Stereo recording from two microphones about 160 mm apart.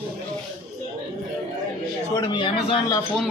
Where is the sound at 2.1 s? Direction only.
30° left (ahead or behind).